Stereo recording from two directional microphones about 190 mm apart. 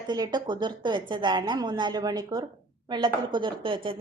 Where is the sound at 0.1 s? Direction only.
20° right (ahead or behind).